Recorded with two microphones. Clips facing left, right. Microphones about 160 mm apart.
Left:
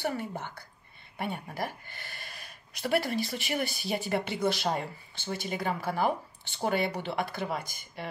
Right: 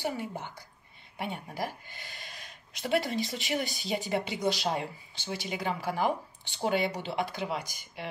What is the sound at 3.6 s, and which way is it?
Speech, 20° right (ahead or behind).